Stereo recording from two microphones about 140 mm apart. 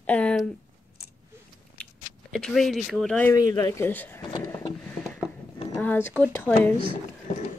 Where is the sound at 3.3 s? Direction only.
25° left (ahead or behind).